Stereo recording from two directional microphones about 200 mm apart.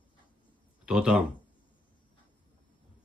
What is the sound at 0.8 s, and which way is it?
Speech, 5° right (ahead or behind).